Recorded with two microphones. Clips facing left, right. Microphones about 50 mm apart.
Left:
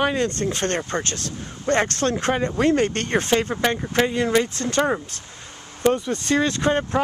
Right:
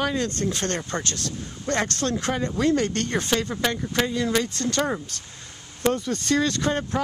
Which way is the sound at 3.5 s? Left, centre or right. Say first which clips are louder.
Left 3 dB; left.